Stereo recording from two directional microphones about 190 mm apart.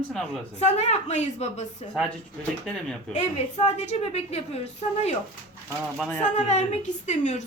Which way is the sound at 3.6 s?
35° left (ahead or behind).